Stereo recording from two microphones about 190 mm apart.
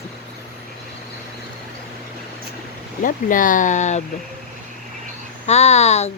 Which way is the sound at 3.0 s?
45° left (ahead or behind).